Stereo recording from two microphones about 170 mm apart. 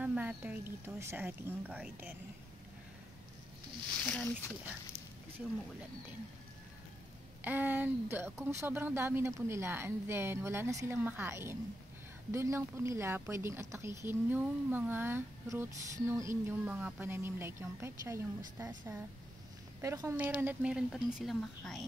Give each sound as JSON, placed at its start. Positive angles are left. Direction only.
{"t": 0.0, "sound": "speech", "side_deg": -10}
{"t": 4.0, "sound": "speech", "side_deg": 5}
{"t": 7.4, "sound": "speech", "side_deg": -10}